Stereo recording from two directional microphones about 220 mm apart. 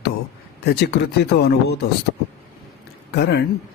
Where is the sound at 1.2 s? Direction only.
50° left (ahead or behind).